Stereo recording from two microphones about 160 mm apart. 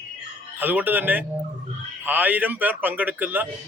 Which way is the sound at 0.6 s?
10° right (ahead or behind).